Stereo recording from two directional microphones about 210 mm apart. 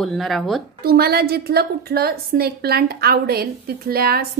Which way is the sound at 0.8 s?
45° right (ahead or behind).